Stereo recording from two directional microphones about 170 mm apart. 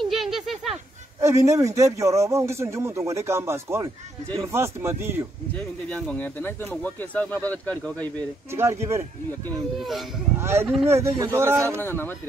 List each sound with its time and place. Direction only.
0.0 s a sound: centre (ahead or behind)
1.2 s a man's voice: 20° right (ahead or behind)
5.9 s speech: 5° left (ahead or behind)
8.5 s a man's voice: 15° right (ahead or behind)
9.8 s speech: centre (ahead or behind)
10.4 s a man's voice: 15° right (ahead or behind)
11.8 s speech: 10° left (ahead or behind)